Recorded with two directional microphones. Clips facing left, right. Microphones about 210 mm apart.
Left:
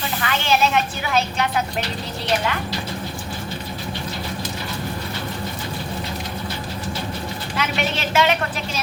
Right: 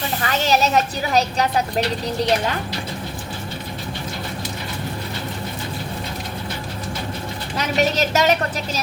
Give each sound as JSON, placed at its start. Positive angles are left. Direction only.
{"t": 0.2, "sound": "speech", "side_deg": -40}
{"t": 7.5, "sound": "speech", "side_deg": -40}